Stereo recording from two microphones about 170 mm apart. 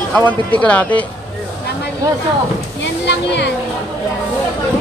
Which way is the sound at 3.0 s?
90° left.